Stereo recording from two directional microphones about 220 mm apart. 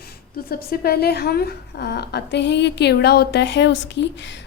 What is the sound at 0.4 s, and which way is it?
A woman's voice, 45° left (ahead or behind).